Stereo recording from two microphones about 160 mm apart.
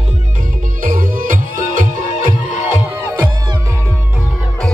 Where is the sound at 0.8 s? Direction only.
60° right (ahead or behind).